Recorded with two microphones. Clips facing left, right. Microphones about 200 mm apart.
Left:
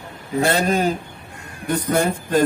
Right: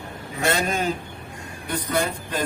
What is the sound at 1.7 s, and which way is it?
Speech, 45° left (ahead or behind).